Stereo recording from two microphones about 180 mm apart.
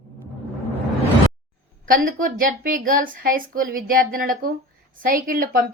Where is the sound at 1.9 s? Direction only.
50° right (ahead or behind).